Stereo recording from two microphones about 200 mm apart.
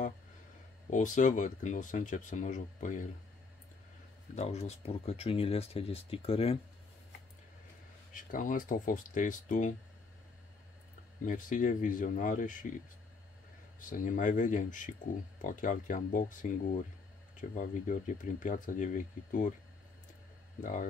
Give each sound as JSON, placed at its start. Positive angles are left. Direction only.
{"t": 0.8, "sound": "speech", "side_deg": 40}
{"t": 4.4, "sound": "speech", "side_deg": 30}
{"t": 8.1, "sound": "speech", "side_deg": 40}
{"t": 11.2, "sound": "speech", "side_deg": 40}
{"t": 13.7, "sound": "speech", "side_deg": 40}
{"t": 20.6, "sound": "speech", "side_deg": 40}